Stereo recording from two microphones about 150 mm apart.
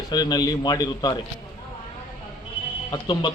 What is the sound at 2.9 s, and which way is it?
Speech, 25° left (ahead or behind).